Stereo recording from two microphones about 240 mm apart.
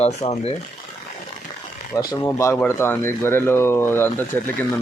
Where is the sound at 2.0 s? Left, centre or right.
Centre.